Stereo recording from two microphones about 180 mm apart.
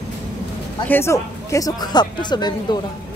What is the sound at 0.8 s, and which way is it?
A woman's voice, 15° left (ahead or behind).